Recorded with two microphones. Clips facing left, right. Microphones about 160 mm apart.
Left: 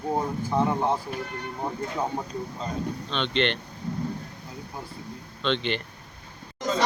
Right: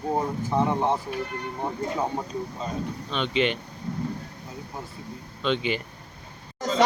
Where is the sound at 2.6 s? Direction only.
5° right (ahead or behind).